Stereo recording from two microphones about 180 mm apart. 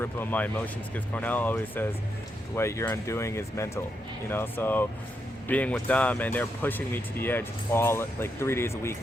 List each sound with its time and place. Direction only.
0.0 s speech: 10° left (ahead or behind)